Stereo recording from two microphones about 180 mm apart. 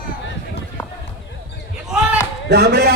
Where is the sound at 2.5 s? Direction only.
65° right (ahead or behind).